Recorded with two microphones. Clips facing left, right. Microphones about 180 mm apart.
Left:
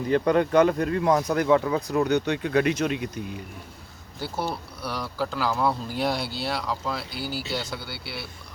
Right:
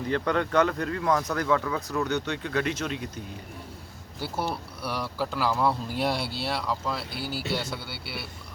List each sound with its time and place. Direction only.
0.1 s speech: 15° left (ahead or behind)
2.0 s speech: 15° left (ahead or behind)
4.2 s speech: 5° right (ahead or behind)